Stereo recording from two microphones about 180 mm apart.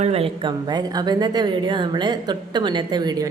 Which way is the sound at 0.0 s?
35° right (ahead or behind).